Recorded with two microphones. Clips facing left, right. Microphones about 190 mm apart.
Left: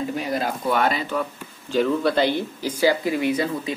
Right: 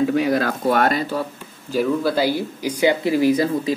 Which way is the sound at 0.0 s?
90° right.